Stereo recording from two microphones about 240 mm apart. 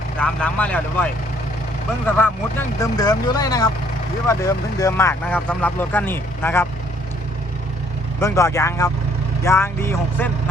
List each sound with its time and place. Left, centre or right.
0.2 s speech: centre
2.1 s speech: centre
8.2 s speech: centre